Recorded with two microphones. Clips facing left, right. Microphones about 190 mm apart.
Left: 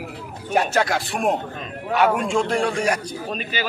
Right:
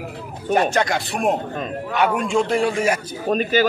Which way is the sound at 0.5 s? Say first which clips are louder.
Right 1 dB; 5° left (ahead or behind).